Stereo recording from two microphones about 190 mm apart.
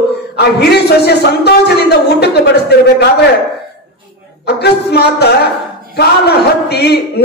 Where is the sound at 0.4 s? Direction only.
60° left (ahead or behind).